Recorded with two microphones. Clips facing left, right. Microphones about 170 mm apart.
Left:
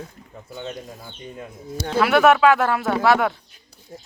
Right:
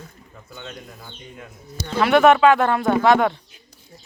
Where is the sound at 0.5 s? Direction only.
25° left (ahead or behind).